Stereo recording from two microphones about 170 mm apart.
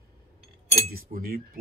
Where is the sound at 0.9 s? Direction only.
60° right (ahead or behind).